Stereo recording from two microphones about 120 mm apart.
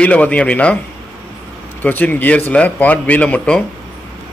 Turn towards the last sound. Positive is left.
turn(degrees=10)  # may be behind; listen again after turning